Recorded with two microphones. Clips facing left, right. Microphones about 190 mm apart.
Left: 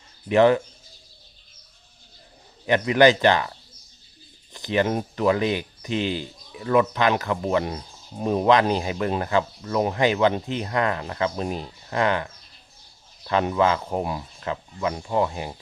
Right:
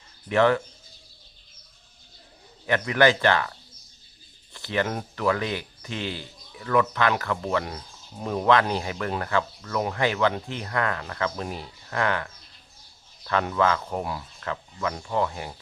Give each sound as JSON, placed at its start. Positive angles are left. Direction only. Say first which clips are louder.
{"t": 0.3, "sound": "speech", "louder": "left 4 dB", "side_deg": 20}
{"t": 2.6, "sound": "speech", "louder": "left 4 dB", "side_deg": 20}
{"t": 4.5, "sound": "speech", "louder": "left 5 dB", "side_deg": 20}